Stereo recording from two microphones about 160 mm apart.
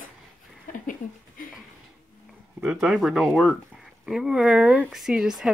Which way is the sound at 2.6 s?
Centre (ahead or behind).